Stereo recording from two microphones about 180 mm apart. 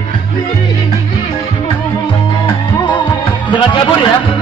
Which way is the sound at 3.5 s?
25° left (ahead or behind).